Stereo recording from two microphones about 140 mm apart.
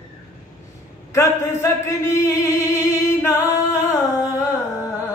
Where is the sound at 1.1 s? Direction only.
20° left (ahead or behind).